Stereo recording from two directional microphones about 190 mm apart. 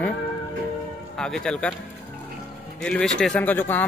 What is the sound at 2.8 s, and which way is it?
Speech, 5° left (ahead or behind).